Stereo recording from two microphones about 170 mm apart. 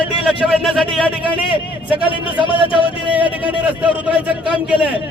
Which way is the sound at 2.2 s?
30° left (ahead or behind).